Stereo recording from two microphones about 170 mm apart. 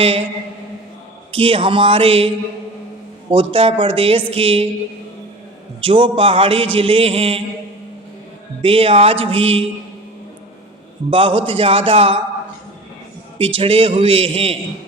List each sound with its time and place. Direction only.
1.3 s a man's voice: 35° right (ahead or behind)
5.8 s a man's voice: 30° right (ahead or behind)
8.6 s a man's voice: 35° right (ahead or behind)
11.1 s a man's voice: 30° right (ahead or behind)
13.4 s a man's voice: 35° right (ahead or behind)